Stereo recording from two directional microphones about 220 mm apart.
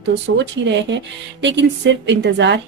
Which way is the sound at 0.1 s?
55° right (ahead or behind).